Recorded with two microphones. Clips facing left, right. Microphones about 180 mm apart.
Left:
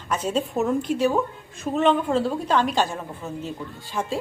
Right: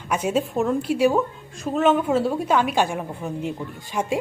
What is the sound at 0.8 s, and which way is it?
A woman's voice, 10° right (ahead or behind).